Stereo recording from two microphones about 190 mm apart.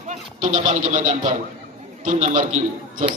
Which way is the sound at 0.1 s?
40° right (ahead or behind).